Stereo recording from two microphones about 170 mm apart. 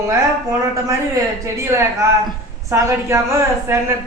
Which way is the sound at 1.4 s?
15° right (ahead or behind).